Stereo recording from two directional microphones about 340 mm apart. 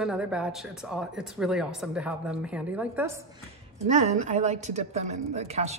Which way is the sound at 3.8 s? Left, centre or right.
Centre.